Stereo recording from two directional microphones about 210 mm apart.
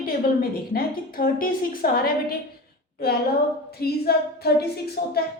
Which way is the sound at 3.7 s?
50° left (ahead or behind).